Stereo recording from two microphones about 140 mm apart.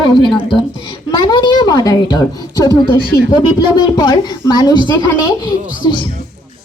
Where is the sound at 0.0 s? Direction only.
35° left (ahead or behind).